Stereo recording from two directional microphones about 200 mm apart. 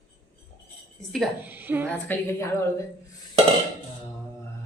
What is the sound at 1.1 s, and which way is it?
Speech, 5° right (ahead or behind).